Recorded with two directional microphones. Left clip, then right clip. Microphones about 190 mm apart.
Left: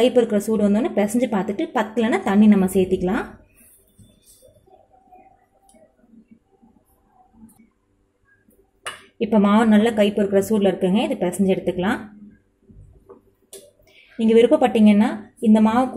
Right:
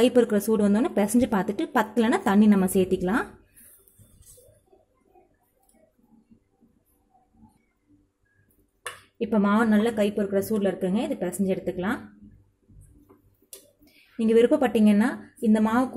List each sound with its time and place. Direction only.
0.0 s a woman's voice: 20° right (ahead or behind)
9.2 s speech: 5° right (ahead or behind)
13.8 s a woman's voice: 10° right (ahead or behind)